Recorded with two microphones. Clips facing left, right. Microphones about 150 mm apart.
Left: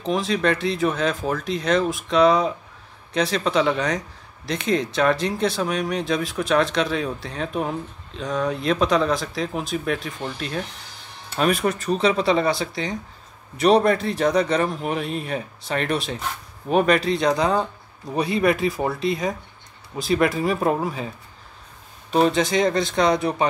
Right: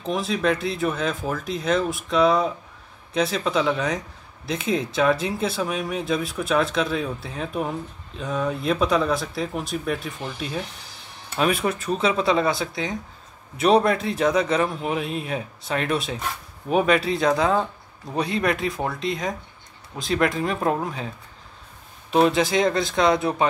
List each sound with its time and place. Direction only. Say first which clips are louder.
0.0 s speech: left 2 dB; 5° right (ahead or behind)
22.1 s speech: even; 5° right (ahead or behind)